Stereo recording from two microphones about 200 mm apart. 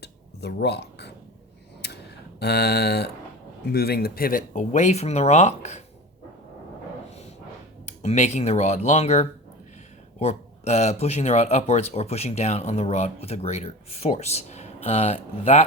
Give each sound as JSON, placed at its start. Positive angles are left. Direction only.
{"t": 0.0, "sound": "a sound", "side_deg": 55}
{"t": 3.7, "sound": "speech", "side_deg": 50}
{"t": 7.9, "sound": "speech", "side_deg": 35}